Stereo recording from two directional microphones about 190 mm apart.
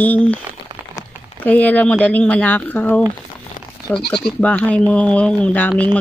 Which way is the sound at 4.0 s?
55° left (ahead or behind).